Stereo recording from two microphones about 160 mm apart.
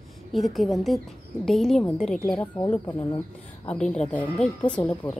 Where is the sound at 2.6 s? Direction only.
20° left (ahead or behind).